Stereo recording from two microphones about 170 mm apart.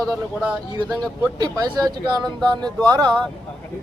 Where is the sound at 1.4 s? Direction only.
25° right (ahead or behind).